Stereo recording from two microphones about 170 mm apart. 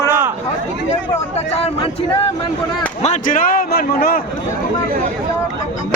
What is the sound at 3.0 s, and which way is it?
A man's voice, 45° left (ahead or behind).